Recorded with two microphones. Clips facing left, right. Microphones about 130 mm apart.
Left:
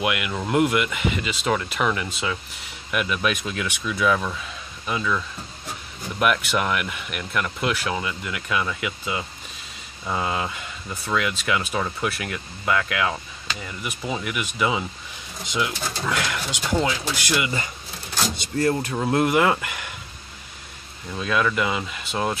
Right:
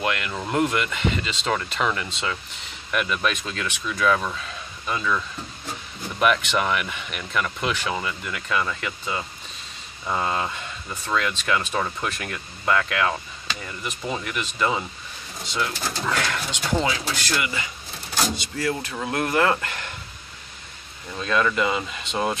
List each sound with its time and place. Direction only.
0.0 s speech: 10° left (ahead or behind)
16.8 s speech: 5° right (ahead or behind)
17.1 s speech: 15° left (ahead or behind)
18.7 s speech: 40° left (ahead or behind)
18.9 s speech: 20° left (ahead or behind)
21.1 s speech: 5° left (ahead or behind)